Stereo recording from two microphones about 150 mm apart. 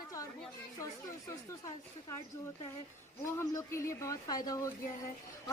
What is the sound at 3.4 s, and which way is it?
Speech, 20° left (ahead or behind).